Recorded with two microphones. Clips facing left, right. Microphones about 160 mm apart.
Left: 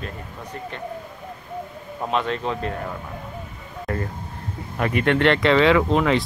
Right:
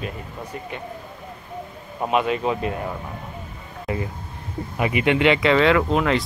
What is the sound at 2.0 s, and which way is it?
Speech, 10° right (ahead or behind).